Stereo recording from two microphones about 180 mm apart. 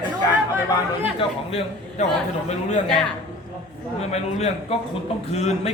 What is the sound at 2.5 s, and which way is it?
Speech, 40° left (ahead or behind).